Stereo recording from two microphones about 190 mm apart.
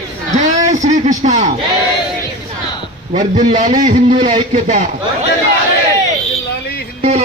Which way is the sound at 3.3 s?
45° right (ahead or behind).